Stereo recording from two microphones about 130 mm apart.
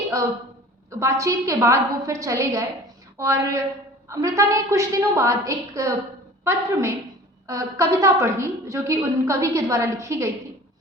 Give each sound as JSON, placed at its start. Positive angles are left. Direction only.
{"t": 0.9, "sound": "a woman's voice", "side_deg": -25}